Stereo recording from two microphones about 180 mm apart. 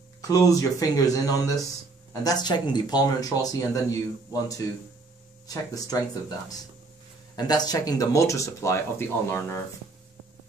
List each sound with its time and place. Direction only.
0.3 s speech: 20° left (ahead or behind)
5.9 s speech: 20° left (ahead or behind)
7.3 s speech: 20° left (ahead or behind)